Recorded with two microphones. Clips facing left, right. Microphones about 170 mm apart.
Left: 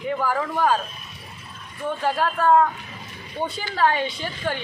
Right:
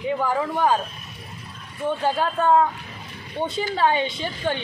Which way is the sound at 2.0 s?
25° right (ahead or behind).